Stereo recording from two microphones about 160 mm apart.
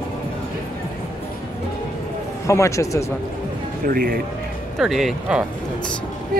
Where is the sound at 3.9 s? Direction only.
65° right (ahead or behind).